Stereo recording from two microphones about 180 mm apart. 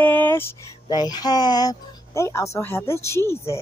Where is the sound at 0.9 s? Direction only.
25° left (ahead or behind).